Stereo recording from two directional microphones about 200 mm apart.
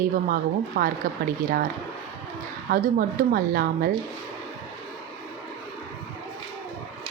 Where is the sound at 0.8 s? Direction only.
50° right (ahead or behind).